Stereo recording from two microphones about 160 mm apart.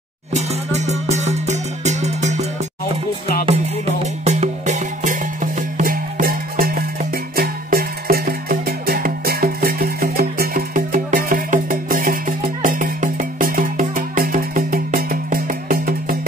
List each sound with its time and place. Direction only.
0.3 s music: 45° right (ahead or behind)
3.4 s music: 40° right (ahead or behind); by 16.2 s 60° right (ahead or behind)